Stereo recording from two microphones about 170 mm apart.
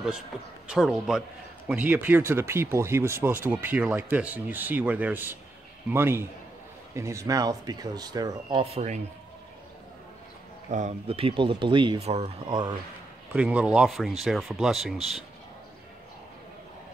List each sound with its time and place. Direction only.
0.7 s speech: centre (ahead or behind); by 9.0 s 40° right (ahead or behind)
10.7 s speech: 45° right (ahead or behind); by 12.7 s 25° right (ahead or behind)
13.3 s speech: 5° right (ahead or behind)